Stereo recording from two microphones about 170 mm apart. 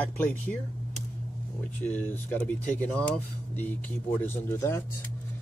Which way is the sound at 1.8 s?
10° left (ahead or behind).